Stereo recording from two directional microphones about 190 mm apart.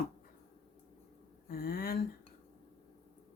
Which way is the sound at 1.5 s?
50° left (ahead or behind).